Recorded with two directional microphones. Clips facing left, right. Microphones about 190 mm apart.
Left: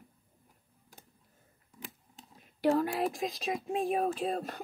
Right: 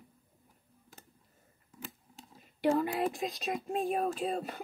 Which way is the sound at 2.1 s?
Centre (ahead or behind).